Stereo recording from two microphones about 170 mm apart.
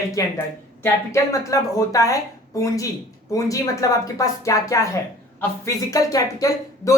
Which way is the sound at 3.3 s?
20° left (ahead or behind).